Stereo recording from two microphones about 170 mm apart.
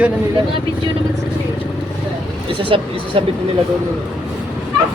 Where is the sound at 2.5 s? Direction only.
30° right (ahead or behind).